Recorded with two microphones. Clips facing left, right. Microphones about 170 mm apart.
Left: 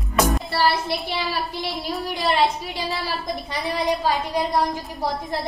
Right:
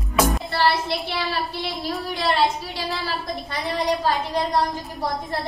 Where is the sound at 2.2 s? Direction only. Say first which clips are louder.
Left 1 dB; 15° left (ahead or behind).